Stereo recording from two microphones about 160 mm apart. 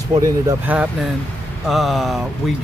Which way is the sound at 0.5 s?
10° right (ahead or behind).